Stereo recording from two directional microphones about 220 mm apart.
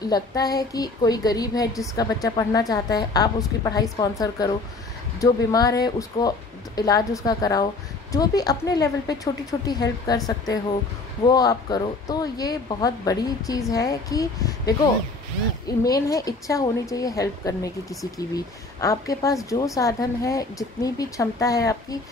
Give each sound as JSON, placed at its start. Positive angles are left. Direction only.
{"t": 0.1, "sound": "a woman's voice", "side_deg": 15}
{"t": 15.8, "sound": "a woman's voice", "side_deg": 15}